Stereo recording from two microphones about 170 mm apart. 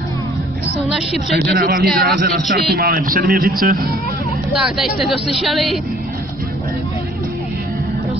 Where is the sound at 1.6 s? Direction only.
60° right (ahead or behind).